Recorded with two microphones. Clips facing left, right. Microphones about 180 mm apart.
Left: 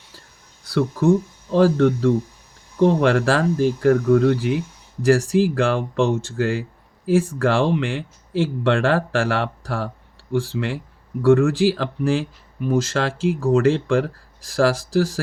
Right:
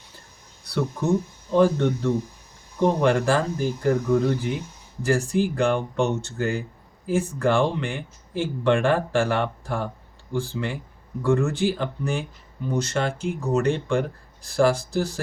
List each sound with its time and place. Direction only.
0.6 s speech: 90° left
2.7 s speech: 75° left (ahead or behind)
5.3 s a man's voice: 90° left